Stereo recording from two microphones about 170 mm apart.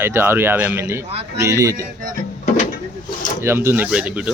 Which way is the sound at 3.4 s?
15° right (ahead or behind).